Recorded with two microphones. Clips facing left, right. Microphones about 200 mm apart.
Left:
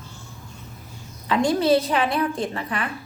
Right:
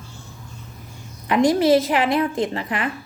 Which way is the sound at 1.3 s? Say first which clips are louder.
Right 3 dB; 20° right (ahead or behind).